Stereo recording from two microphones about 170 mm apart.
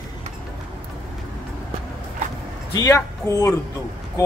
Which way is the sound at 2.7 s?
20° left (ahead or behind).